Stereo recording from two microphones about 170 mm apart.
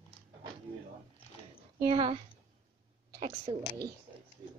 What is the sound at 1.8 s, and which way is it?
Speech, 30° right (ahead or behind).